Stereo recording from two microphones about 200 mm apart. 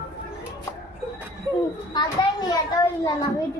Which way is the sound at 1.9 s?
20° left (ahead or behind).